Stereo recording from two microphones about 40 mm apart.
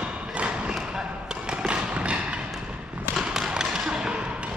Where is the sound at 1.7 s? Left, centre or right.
Right.